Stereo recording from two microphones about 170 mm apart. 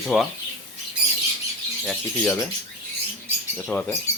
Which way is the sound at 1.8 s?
10° left (ahead or behind).